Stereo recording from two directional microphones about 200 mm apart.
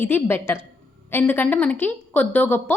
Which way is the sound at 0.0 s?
10° left (ahead or behind).